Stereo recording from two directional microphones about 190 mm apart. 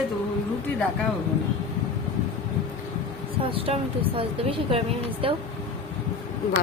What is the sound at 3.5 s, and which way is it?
Speech, 30° right (ahead or behind).